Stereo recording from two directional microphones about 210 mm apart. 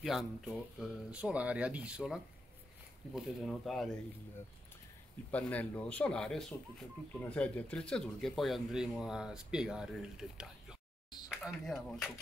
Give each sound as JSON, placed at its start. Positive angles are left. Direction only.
{"t": 0.0, "sound": "speech", "side_deg": 0}
{"t": 5.3, "sound": "speech", "side_deg": 5}